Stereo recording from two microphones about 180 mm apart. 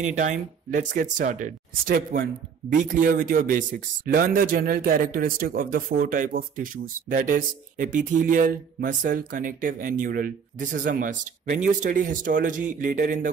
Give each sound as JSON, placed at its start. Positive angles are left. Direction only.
{"t": 0.1, "sound": "speech", "side_deg": -45}